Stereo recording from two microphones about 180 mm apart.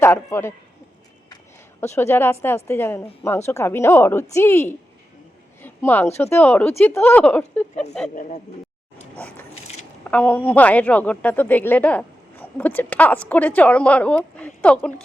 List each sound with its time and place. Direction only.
0.0 s a man's voice: 15° left (ahead or behind)
1.8 s a man's voice: 15° left (ahead or behind)
8.1 s speech: 50° left (ahead or behind)
9.1 s dog: 10° left (ahead or behind)
10.1 s a man's voice: 10° left (ahead or behind)